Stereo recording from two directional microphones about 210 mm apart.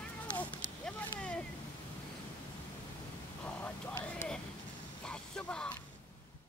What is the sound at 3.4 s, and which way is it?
Vehicle, 10° left (ahead or behind).